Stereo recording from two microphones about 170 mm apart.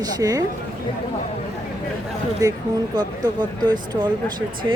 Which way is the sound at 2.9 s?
25° right (ahead or behind).